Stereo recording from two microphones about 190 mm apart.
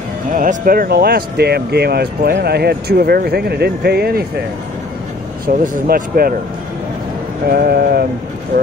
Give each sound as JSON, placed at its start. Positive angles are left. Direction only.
{"t": 0.3, "sound": "speech", "side_deg": -45}
{"t": 5.6, "sound": "speech", "side_deg": -50}
{"t": 7.5, "sound": "speech", "side_deg": -55}